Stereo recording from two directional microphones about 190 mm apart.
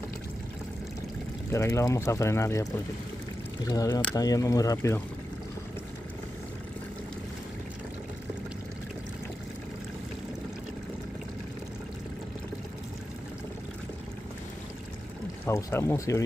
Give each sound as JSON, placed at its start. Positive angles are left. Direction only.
{"t": 1.5, "sound": "speech", "side_deg": 15}
{"t": 15.4, "sound": "speech", "side_deg": 15}